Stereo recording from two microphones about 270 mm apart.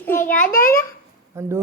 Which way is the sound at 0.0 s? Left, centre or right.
Centre.